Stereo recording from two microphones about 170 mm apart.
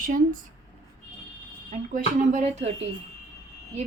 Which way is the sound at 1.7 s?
45° right (ahead or behind).